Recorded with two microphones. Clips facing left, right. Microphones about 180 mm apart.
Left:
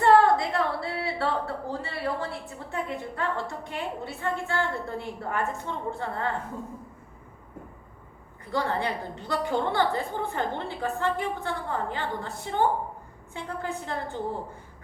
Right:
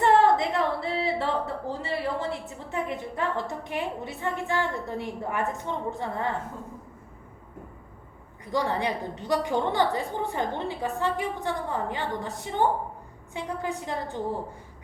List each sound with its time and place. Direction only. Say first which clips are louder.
0.0 s a woman's voice: left 1 dB; 20° right (ahead or behind)
8.4 s a woman's voice: right 1 dB; 15° right (ahead or behind)